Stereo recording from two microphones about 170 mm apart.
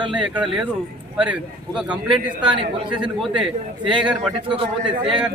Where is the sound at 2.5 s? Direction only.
30° right (ahead or behind).